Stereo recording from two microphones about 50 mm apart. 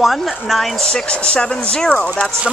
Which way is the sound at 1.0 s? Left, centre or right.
Left.